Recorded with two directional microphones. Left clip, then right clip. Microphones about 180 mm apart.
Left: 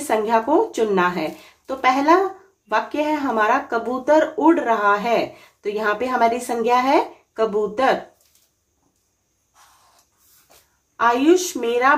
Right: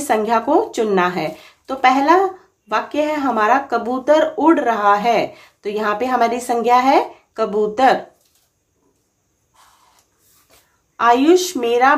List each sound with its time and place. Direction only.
0.0 s speech: 25° right (ahead or behind)
11.0 s speech: 20° right (ahead or behind)